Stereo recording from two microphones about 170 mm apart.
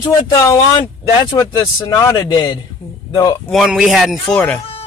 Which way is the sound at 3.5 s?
Centre (ahead or behind).